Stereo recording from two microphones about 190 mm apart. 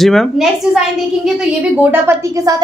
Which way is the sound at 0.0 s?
Centre (ahead or behind).